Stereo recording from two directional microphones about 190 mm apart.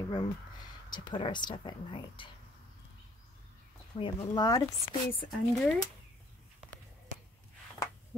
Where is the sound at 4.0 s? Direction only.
25° left (ahead or behind).